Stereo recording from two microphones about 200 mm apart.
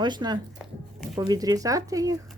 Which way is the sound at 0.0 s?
20° right (ahead or behind).